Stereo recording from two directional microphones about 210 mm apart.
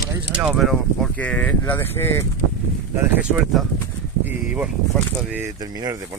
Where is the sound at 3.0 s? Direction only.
5° right (ahead or behind).